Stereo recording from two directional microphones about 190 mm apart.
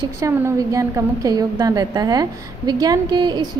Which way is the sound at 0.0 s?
15° right (ahead or behind).